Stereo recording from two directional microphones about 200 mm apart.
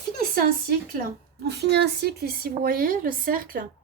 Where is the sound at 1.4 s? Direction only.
55° right (ahead or behind).